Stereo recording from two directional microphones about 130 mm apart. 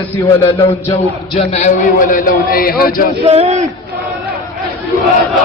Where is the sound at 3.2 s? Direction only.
50° right (ahead or behind).